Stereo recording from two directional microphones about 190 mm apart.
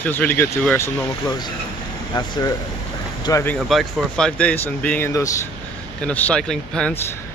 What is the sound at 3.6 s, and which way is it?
Speech, centre (ahead or behind).